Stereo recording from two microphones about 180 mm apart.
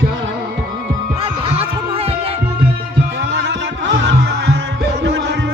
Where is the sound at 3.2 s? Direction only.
85° right.